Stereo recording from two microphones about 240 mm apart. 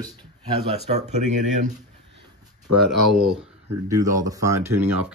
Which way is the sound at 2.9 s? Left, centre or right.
Centre.